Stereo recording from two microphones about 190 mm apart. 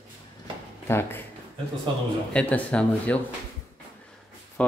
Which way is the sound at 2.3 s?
5° left (ahead or behind).